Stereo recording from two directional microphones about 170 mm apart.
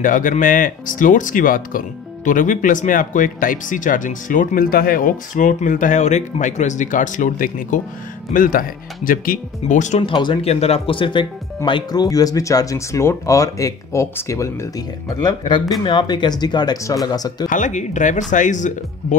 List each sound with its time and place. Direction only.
0.0 s speech: 50° left (ahead or behind)
10.0 s speech: 30° left (ahead or behind)
17.5 s speech: 45° left (ahead or behind)